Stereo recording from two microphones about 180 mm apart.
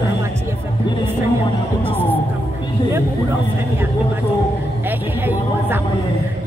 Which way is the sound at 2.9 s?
15° right (ahead or behind).